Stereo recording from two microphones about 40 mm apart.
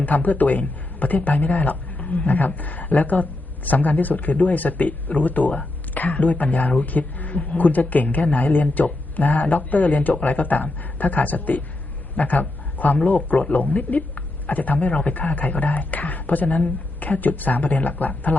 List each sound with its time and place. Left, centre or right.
0.0 s a man's voice: left